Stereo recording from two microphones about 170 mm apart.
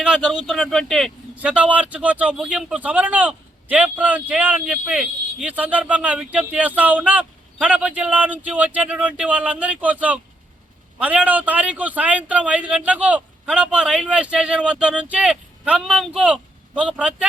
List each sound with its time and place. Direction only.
0.0 s a man's voice: 5° right (ahead or behind)